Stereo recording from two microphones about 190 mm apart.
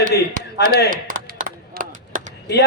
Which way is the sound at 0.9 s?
45° right (ahead or behind).